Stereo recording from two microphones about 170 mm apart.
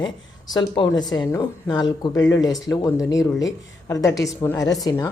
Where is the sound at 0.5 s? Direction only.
25° left (ahead or behind).